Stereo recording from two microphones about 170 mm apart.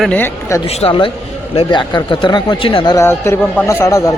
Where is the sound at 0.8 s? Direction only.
30° left (ahead or behind).